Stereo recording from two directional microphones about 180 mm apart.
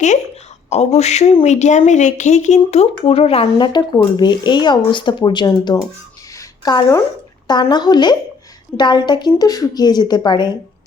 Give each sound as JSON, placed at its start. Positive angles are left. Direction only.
{"t": 0.7, "sound": "a woman's voice", "side_deg": 40}